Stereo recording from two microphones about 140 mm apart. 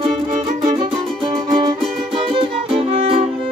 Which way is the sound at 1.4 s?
35° right (ahead or behind).